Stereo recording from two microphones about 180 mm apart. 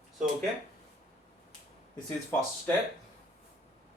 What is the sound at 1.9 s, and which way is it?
Speech, 15° left (ahead or behind).